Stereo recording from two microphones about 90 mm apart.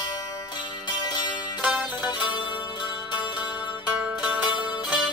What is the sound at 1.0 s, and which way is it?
Music, 55° left (ahead or behind).